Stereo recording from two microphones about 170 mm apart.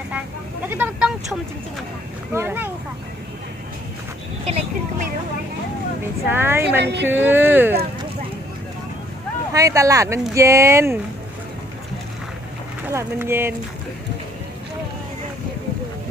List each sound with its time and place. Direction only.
0.7 s vehicle: 10° right (ahead or behind)
2.3 s speech: 15° right (ahead or behind)
4.5 s vehicle: 40° right (ahead or behind)
6.2 s speech: 15° right (ahead or behind)
6.8 s speech: 85° right
7.1 s speech: 10° right (ahead or behind)
9.5 s speech: 20° right (ahead or behind)
12.8 s speech: 15° right (ahead or behind)